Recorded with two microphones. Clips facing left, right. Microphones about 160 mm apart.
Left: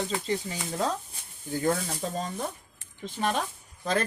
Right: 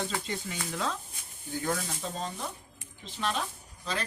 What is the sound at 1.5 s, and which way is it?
Speech, 50° left (ahead or behind).